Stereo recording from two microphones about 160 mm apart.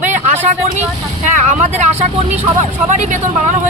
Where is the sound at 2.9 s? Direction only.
45° right (ahead or behind).